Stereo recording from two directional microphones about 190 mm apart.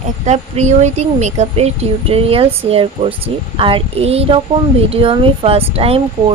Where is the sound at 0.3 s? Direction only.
35° right (ahead or behind).